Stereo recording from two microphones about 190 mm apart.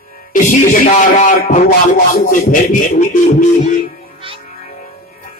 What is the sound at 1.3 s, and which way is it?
Speech, 50° left (ahead or behind).